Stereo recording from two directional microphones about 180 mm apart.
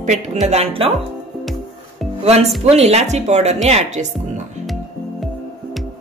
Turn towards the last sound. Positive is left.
turn(degrees=0)  # may be behind; listen again after turning